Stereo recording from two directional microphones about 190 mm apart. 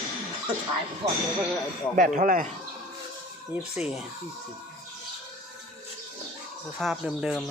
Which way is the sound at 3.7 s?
5° right (ahead or behind).